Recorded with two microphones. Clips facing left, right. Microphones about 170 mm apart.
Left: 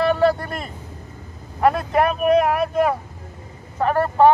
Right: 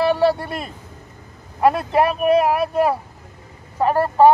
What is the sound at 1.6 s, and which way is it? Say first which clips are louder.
Speech: right 1 dB; 30° right (ahead or behind).